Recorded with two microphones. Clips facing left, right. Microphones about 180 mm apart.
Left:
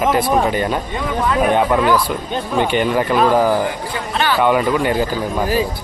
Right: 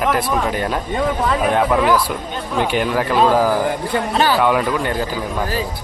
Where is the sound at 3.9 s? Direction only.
40° right (ahead or behind).